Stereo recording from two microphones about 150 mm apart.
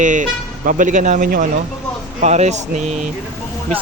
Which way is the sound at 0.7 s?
60° right (ahead or behind).